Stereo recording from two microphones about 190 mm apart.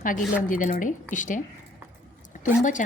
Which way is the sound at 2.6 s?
40° left (ahead or behind).